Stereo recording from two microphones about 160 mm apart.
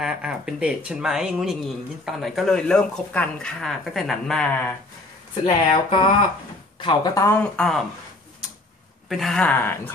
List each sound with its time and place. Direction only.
0.0 s speech: 5° right (ahead or behind); by 4.7 s 10° left (ahead or behind)
5.4 s speech: 30° left (ahead or behind)
7.5 s speech: 5° left (ahead or behind)
9.1 s speech: centre (ahead or behind)